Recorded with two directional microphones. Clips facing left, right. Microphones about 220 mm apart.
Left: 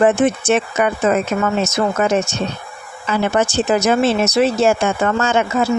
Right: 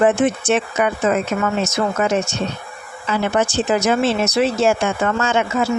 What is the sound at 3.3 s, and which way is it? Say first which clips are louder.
Speech: left 1 dB; 40° left (ahead or behind).